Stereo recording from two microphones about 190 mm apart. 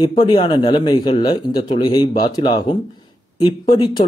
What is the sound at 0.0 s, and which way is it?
Speech, 25° left (ahead or behind).